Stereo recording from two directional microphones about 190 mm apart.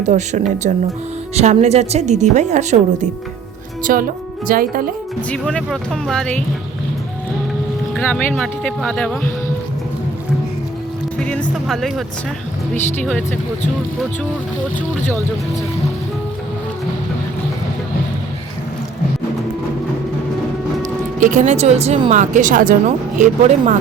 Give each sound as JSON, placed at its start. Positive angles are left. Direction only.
{"t": 0.0, "sound": "a woman's voice", "side_deg": -40}
{"t": 3.9, "sound": "speech", "side_deg": -50}
{"t": 5.3, "sound": "speech", "side_deg": 5}
{"t": 7.9, "sound": "speech", "side_deg": 5}
{"t": 11.2, "sound": "music", "side_deg": 5}
{"t": 11.7, "sound": "speech", "side_deg": 0}
{"t": 20.8, "sound": "a woman's voice", "side_deg": -40}